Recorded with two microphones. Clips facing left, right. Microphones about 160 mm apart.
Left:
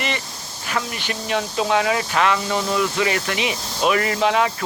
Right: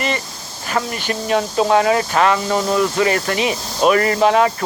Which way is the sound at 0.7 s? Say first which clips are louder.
Right 5 dB; 45° right (ahead or behind).